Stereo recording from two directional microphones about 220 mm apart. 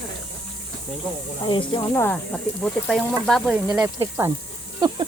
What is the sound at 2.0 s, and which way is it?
Speech, 5° left (ahead or behind).